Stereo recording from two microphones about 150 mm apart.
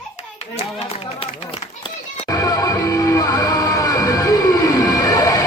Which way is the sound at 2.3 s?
20° left (ahead or behind).